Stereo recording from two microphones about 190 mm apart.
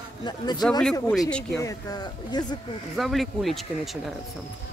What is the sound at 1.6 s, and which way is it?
Speech, 20° left (ahead or behind).